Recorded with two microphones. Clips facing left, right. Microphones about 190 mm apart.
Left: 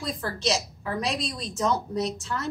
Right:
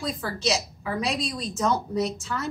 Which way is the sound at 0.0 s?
Centre (ahead or behind).